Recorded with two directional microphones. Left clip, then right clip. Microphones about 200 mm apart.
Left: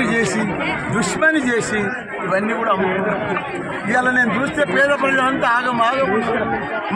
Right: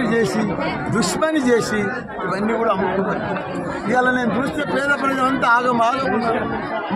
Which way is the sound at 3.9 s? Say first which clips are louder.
Left 2 dB; 15° left (ahead or behind).